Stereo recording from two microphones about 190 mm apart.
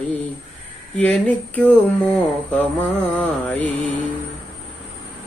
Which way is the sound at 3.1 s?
10° left (ahead or behind).